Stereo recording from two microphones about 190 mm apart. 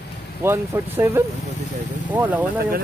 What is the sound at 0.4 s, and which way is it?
Speech, 15° right (ahead or behind).